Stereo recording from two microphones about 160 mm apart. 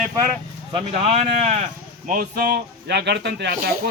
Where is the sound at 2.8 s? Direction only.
90° right.